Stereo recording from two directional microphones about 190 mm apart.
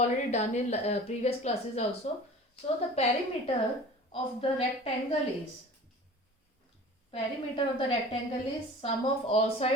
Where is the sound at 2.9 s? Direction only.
35° left (ahead or behind).